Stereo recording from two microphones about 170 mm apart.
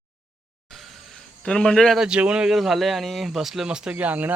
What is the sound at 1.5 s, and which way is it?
Speech, 5° left (ahead or behind).